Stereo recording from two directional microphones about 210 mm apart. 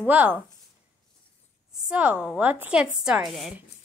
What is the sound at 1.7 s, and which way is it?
A woman's voice, 5° right (ahead or behind).